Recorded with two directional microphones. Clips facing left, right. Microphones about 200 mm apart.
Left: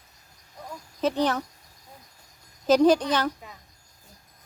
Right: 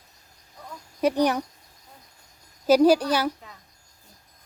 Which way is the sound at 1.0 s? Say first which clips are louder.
Right 3 dB; 10° right (ahead or behind).